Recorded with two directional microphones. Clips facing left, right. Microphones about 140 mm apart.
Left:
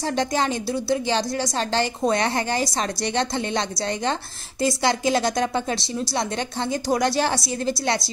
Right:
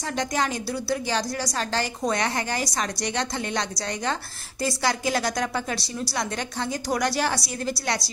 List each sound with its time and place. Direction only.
0.0 s a woman's voice: 30° left (ahead or behind)